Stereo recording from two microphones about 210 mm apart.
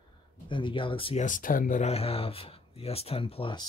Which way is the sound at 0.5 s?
25° left (ahead or behind).